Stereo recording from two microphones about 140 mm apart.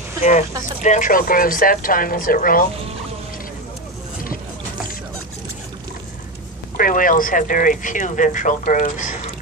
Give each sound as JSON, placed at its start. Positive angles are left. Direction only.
{"t": 0.2, "sound": "a woman's voice", "side_deg": 65}
{"t": 6.8, "sound": "speech", "side_deg": 80}